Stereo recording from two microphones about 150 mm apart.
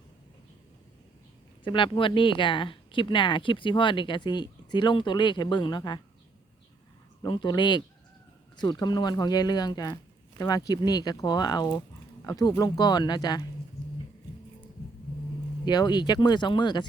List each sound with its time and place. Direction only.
1.6 s speech: 35° left (ahead or behind)
7.2 s speech: 30° left (ahead or behind)
15.6 s speech: 30° left (ahead or behind)